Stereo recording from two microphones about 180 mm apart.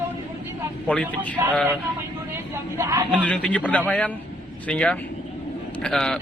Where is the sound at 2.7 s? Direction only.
15° right (ahead or behind).